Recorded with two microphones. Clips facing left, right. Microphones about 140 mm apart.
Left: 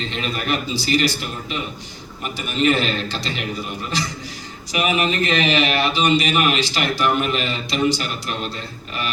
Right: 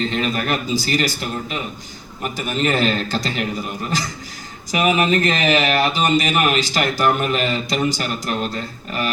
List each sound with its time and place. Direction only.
0.1 s a man's voice: 45° right (ahead or behind)